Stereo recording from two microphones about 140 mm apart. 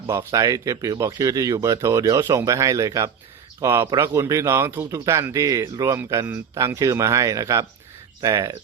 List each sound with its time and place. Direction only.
0.1 s speech: 20° right (ahead or behind)